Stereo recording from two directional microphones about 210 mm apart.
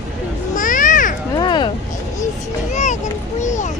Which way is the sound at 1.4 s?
20° left (ahead or behind).